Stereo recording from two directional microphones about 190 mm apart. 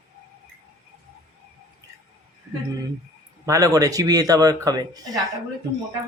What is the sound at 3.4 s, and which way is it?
A man's voice, 15° right (ahead or behind).